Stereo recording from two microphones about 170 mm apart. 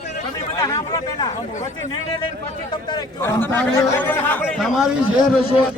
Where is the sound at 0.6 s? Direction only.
20° left (ahead or behind).